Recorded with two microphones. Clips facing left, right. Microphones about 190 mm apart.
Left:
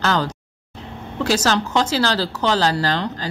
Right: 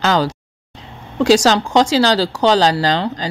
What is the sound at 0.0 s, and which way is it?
A woman's voice, 15° right (ahead or behind).